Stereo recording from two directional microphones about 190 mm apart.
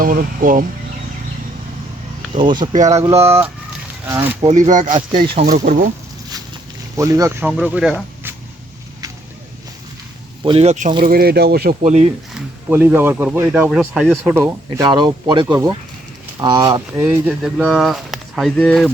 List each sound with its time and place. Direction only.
0.0 s speech: 50° right (ahead or behind)
2.4 s speech: 25° right (ahead or behind)
3.0 s speech: 15° right (ahead or behind)
4.4 s speech: 35° right (ahead or behind)
5.1 s speech: 25° right (ahead or behind)
6.9 s speech: 15° right (ahead or behind)
10.4 s speech: 30° right (ahead or behind)
11.0 s speech: 55° right (ahead or behind)
11.8 s speech: 35° right (ahead or behind)
12.3 s speech: 10° right (ahead or behind)
14.8 s speech: 25° right (ahead or behind)
17.0 s speech: 5° right (ahead or behind)